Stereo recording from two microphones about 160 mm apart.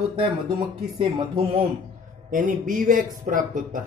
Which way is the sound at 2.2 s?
55° right (ahead or behind).